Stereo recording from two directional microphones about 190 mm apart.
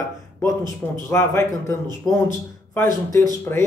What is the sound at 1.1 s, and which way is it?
Speech, 15° left (ahead or behind).